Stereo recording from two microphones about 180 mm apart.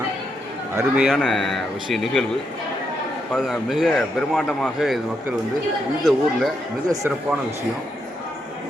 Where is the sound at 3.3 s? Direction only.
Centre (ahead or behind).